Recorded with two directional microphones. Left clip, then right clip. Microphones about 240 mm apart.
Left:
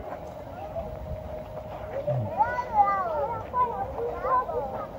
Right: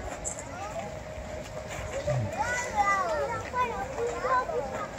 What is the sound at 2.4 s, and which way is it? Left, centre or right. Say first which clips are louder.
Children playing: left 6 dB; right.